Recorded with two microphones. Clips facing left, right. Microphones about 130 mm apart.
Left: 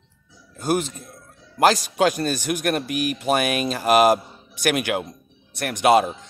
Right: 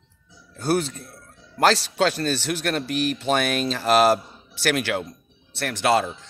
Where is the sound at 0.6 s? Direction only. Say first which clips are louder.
Even; 10° left (ahead or behind).